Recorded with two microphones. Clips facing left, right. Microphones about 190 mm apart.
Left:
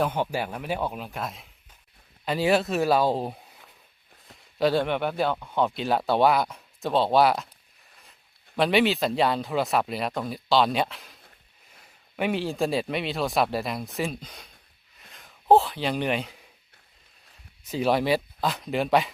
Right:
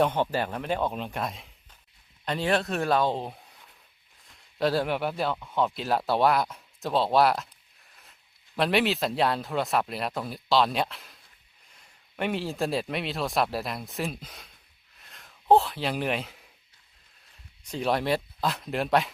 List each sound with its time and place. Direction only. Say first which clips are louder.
0.0 s speech: right 1 dB; 10° left (ahead or behind)
8.5 s speech: left 3 dB; centre (ahead or behind)
14.9 s a sound: left 2 dB; centre (ahead or behind)
17.6 s speech: left 3 dB; 5° left (ahead or behind)